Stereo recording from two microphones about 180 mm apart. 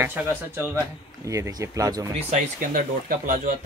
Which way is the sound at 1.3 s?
15° right (ahead or behind).